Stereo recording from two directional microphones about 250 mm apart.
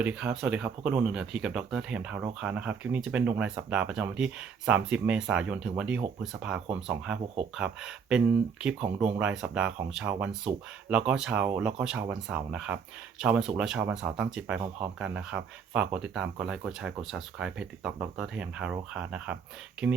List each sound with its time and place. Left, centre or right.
0.0 s speech: centre